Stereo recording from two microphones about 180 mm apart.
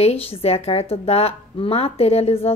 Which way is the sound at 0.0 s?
35° left (ahead or behind).